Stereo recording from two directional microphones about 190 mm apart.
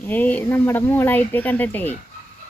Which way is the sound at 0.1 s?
10° left (ahead or behind).